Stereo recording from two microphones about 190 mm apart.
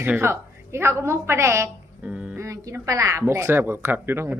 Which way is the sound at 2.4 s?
15° right (ahead or behind).